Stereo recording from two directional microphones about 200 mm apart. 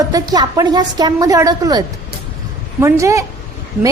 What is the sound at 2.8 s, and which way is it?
Speech, 15° right (ahead or behind).